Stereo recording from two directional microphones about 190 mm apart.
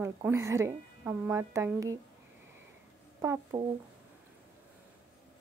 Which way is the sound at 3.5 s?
20° right (ahead or behind).